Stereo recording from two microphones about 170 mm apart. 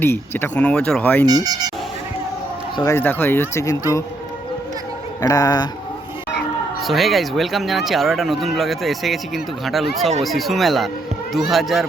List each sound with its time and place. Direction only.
0.0 s speech: 10° left (ahead or behind)
1.2 s speech: 25° right (ahead or behind)
2.7 s speech: 15° left (ahead or behind)
5.2 s speech: 20° left (ahead or behind)
6.8 s speech: centre (ahead or behind)